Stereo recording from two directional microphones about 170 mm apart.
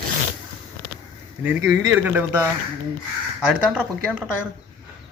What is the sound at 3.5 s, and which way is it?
Speech, 5° right (ahead or behind).